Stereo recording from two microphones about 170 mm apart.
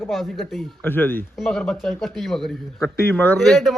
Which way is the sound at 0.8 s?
10° left (ahead or behind).